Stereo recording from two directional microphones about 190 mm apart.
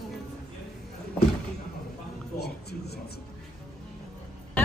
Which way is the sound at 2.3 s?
60° left (ahead or behind).